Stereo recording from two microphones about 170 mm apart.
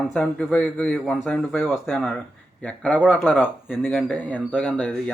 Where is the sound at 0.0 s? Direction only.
5° left (ahead or behind).